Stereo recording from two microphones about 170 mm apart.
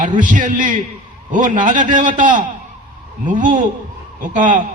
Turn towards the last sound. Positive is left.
turn(degrees=-50)  # may be behind; listen again after turning